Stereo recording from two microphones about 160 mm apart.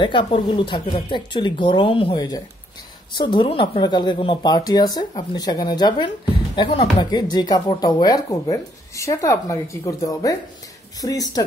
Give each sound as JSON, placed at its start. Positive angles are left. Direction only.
{"t": 0.0, "sound": "speech", "side_deg": 30}